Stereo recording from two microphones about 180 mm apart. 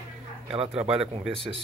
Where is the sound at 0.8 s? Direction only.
30° right (ahead or behind).